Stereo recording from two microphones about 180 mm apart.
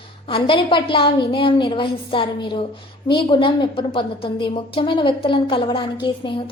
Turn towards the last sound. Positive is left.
turn(degrees=30)  # may be behind; listen again after turning